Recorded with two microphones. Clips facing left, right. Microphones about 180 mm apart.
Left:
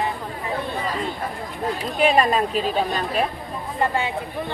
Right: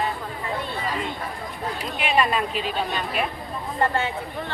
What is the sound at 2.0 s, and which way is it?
Speech, 40° left (ahead or behind).